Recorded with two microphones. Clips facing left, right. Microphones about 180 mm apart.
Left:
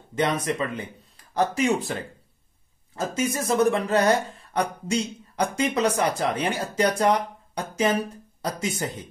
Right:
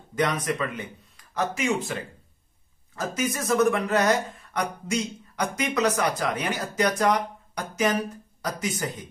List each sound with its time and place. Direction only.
0.1 s speech: 25° left (ahead or behind)
3.0 s speech: 25° left (ahead or behind)